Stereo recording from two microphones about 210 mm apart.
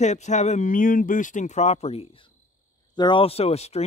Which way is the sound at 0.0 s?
35° left (ahead or behind).